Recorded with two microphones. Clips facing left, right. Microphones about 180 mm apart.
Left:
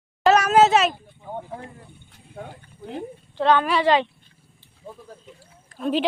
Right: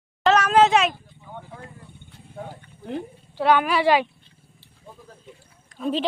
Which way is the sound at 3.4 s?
10° right (ahead or behind).